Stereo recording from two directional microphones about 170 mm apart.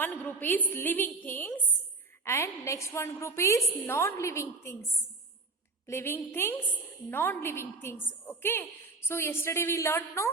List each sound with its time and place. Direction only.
0.0 s a woman's voice: 10° left (ahead or behind)
5.9 s a woman's voice: 15° left (ahead or behind)